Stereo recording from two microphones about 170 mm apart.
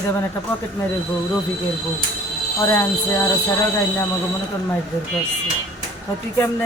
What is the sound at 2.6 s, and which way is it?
Music, 15° left (ahead or behind).